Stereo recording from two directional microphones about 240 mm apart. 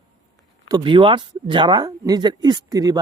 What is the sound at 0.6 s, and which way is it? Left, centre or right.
Speech, centre.